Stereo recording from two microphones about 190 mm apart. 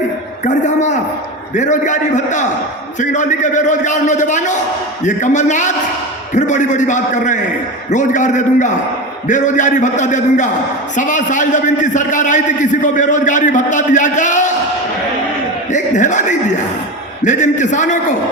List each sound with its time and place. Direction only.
0.4 s a sound: 40° left (ahead or behind)
1.5 s a man's voice: 40° left (ahead or behind)
15.7 s a man's voice: 40° left (ahead or behind)